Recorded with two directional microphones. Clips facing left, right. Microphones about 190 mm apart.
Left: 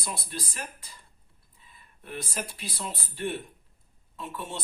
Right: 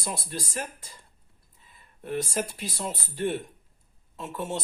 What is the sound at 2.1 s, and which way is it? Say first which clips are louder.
Speech: right 7 dB; 45° right (ahead or behind).